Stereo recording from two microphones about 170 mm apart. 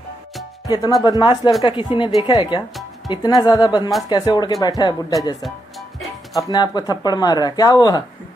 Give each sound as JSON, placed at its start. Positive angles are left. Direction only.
{"t": 0.7, "sound": "speech", "side_deg": 25}
{"t": 6.5, "sound": "speech", "side_deg": 25}